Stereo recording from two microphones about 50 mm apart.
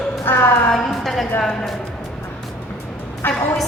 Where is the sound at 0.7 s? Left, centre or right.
Centre.